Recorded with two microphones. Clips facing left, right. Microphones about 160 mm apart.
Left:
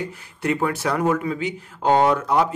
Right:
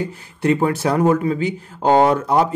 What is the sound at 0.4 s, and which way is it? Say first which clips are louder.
Speech: right 5 dB; 30° right (ahead or behind).